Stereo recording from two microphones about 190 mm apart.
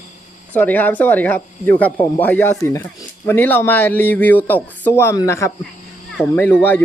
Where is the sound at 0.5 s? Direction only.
10° left (ahead or behind).